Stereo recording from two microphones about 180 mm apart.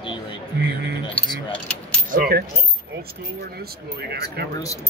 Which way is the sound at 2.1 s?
55° right (ahead or behind).